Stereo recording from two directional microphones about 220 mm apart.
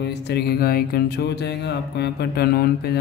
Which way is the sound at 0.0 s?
50° left (ahead or behind).